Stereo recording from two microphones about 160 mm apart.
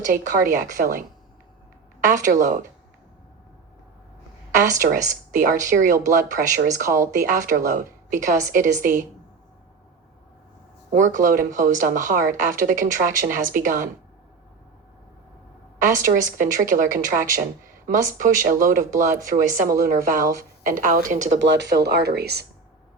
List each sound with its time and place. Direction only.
0.0 s a woman's voice: 55° right (ahead or behind)
2.0 s speech: 55° right (ahead or behind)
4.9 s a woman's voice: 55° right (ahead or behind)
10.9 s a woman's voice: 50° right (ahead or behind)
15.8 s a woman's voice: 55° right (ahead or behind)
21.4 s speech: 90° right